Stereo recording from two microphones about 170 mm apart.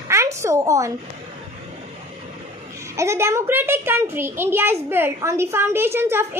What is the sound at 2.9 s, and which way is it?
A child's voice, 15° right (ahead or behind).